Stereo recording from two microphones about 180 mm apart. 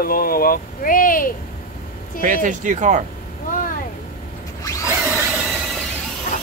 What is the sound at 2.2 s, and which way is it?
Speech, 45° right (ahead or behind).